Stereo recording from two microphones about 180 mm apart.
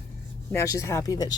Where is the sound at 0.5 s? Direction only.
15° left (ahead or behind).